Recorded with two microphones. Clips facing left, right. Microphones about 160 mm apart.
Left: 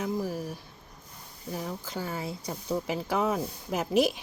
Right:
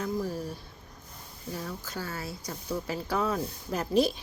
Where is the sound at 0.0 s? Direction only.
10° left (ahead or behind).